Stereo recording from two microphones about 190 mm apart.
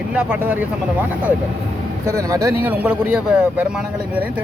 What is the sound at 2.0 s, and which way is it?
A man's voice, 15° right (ahead or behind).